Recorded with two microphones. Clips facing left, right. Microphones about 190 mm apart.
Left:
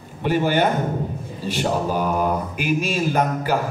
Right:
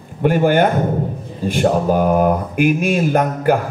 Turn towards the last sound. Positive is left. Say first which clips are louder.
# right 5 dB
turn(degrees=-55)  # may be behind; listen again after turning